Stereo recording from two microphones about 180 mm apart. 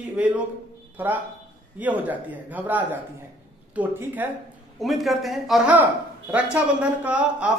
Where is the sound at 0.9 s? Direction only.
10° right (ahead or behind).